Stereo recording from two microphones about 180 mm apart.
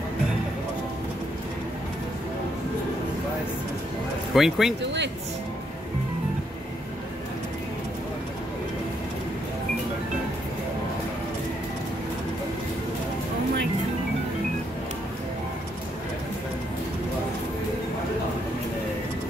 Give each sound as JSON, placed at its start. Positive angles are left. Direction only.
{"t": 4.3, "sound": "speech", "side_deg": 0}